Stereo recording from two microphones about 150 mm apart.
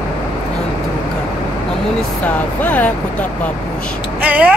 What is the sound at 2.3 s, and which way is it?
Speech, 10° left (ahead or behind).